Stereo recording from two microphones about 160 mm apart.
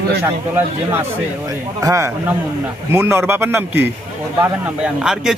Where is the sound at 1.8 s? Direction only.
20° right (ahead or behind).